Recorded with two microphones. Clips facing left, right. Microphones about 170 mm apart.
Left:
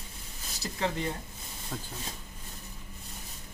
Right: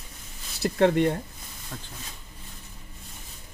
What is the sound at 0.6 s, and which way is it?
Speech, 60° right (ahead or behind).